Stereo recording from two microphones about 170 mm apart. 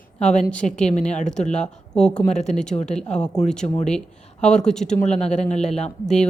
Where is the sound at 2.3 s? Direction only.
45° left (ahead or behind).